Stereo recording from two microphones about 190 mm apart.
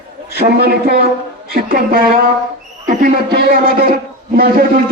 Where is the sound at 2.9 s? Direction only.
50° right (ahead or behind).